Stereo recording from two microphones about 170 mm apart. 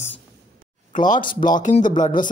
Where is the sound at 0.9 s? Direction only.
50° left (ahead or behind).